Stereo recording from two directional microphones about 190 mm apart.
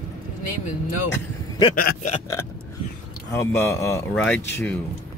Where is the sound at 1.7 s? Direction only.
50° left (ahead or behind).